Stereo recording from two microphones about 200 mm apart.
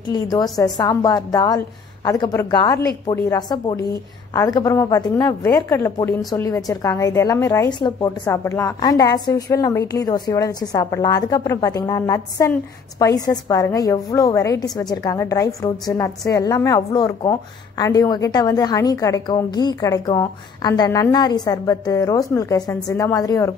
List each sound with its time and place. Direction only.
0.1 s a woman's voice: 20° left (ahead or behind)